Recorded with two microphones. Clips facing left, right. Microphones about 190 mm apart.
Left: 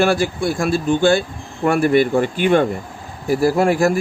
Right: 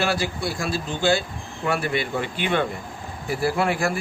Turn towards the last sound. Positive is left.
turn(degrees=40)  # may be behind; listen again after turning